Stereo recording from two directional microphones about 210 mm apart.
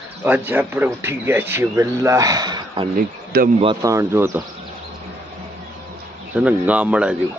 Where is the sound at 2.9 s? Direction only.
45° right (ahead or behind).